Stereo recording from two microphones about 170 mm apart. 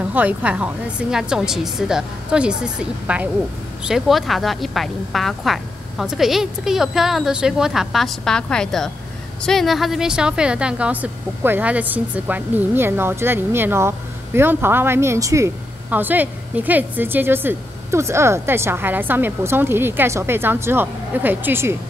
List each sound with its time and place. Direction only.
0.1 s a woman's voice: 10° right (ahead or behind)